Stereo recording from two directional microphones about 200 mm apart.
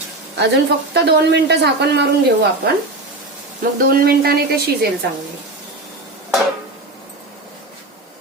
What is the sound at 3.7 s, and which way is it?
A woman's voice, 50° right (ahead or behind).